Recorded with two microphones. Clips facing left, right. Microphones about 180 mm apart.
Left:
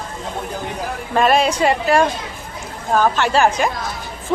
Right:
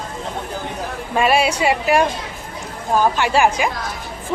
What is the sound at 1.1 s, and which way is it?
Speech, 10° right (ahead or behind).